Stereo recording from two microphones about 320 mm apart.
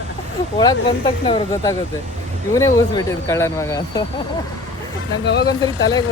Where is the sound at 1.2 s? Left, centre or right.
Centre.